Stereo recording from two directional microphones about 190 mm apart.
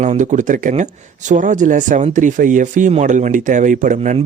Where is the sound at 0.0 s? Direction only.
40° right (ahead or behind).